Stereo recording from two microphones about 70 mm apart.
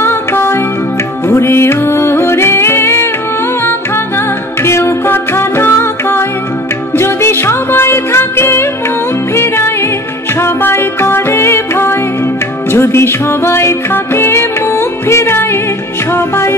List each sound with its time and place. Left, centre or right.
0.0 s music: left
4.6 s music: left